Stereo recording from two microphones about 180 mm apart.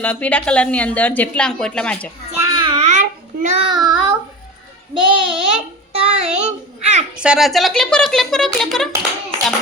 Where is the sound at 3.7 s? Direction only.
25° right (ahead or behind).